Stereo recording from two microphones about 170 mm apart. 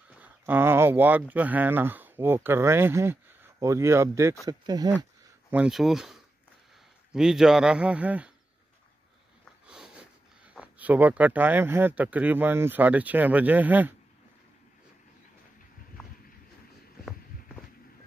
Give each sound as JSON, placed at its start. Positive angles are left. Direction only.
{"t": 0.1, "sound": "speech", "side_deg": -10}
{"t": 5.5, "sound": "speech", "side_deg": -5}
{"t": 9.4, "sound": "speech", "side_deg": -5}